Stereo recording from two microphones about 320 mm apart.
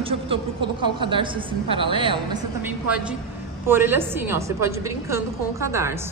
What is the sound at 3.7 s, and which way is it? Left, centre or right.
A woman's voice, centre.